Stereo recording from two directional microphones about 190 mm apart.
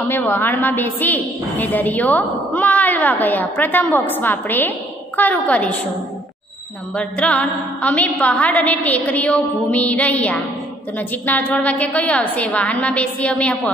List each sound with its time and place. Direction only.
0.1 s a woman's voice: 10° left (ahead or behind)
7.0 s a woman's voice: 5° left (ahead or behind)